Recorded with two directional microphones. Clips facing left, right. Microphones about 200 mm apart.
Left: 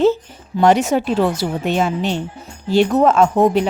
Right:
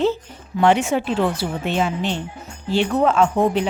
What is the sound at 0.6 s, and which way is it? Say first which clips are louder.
Speech: left 3 dB; 40° left (ahead or behind).